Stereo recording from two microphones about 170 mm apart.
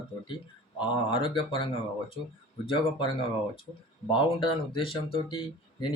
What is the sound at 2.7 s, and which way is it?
Speech, 30° left (ahead or behind).